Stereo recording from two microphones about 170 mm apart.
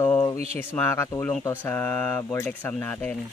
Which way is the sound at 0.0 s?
15° left (ahead or behind).